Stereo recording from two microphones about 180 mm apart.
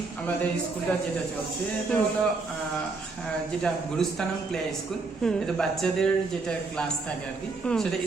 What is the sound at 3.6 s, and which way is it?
Speech, 5° left (ahead or behind).